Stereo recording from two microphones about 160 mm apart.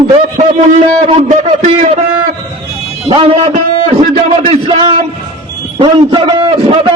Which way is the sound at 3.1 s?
35° right (ahead or behind).